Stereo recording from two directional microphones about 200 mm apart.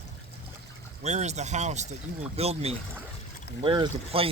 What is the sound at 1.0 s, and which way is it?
Speech, 35° right (ahead or behind).